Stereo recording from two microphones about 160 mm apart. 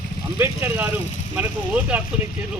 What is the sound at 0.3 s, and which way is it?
Speech, 15° right (ahead or behind).